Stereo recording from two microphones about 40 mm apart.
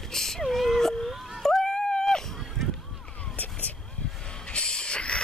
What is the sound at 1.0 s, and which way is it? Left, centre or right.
Whimper, centre.